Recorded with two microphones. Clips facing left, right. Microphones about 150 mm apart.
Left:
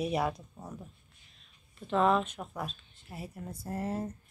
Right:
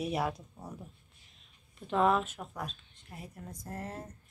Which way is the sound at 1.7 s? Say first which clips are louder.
Left 1 dB; 10° right (ahead or behind).